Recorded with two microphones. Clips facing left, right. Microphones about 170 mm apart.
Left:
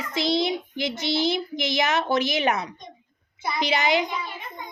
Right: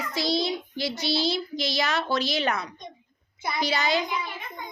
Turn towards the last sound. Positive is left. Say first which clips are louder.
# left 3 dB
turn(degrees=20)  # may be behind; listen again after turning